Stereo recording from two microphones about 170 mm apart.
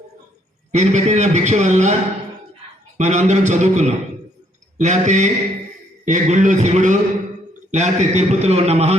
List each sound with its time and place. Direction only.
0.7 s a man's voice: 45° right (ahead or behind)
3.0 s a man's voice: 45° right (ahead or behind)